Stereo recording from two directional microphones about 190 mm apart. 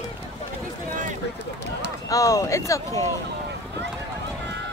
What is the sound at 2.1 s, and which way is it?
Speech, 15° left (ahead or behind).